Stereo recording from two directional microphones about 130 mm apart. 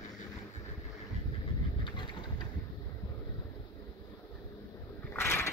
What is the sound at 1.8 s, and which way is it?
Vehicle, 35° left (ahead or behind).